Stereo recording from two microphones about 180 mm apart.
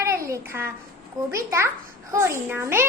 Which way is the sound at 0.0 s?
15° right (ahead or behind).